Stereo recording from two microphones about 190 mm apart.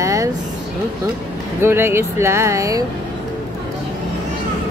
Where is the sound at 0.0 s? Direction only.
15° right (ahead or behind).